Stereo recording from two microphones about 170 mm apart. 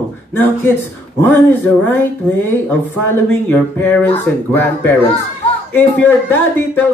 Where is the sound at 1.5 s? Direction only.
15° left (ahead or behind).